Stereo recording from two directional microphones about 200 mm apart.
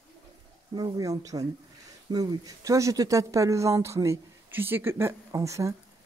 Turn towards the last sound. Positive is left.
turn(degrees=-15)  # may be behind; listen again after turning